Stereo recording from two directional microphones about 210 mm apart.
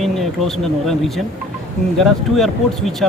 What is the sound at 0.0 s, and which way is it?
Speech, centre (ahead or behind).